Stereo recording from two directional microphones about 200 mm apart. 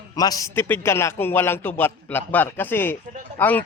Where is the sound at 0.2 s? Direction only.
20° left (ahead or behind).